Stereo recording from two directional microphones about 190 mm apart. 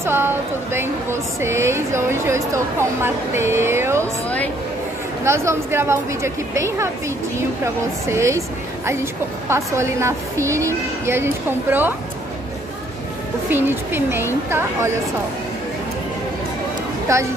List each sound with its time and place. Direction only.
0.0 s a woman's voice: 10° right (ahead or behind)
1.4 s speech: 15° right (ahead or behind)
4.0 s speech: 10° left (ahead or behind)
5.2 s speech: 15° right (ahead or behind)
13.5 s speech: 10° right (ahead or behind)
17.1 s speech: 15° right (ahead or behind)